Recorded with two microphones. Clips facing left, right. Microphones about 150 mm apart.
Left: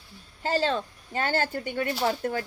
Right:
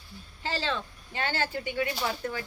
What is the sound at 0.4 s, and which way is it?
Speech, 45° left (ahead or behind).